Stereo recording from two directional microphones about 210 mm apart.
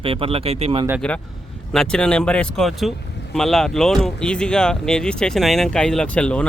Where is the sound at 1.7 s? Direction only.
5° left (ahead or behind).